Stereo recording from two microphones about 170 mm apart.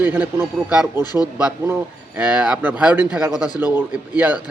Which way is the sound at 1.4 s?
10° right (ahead or behind).